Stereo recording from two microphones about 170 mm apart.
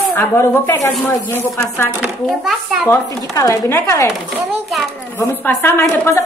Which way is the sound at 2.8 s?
15° left (ahead or behind).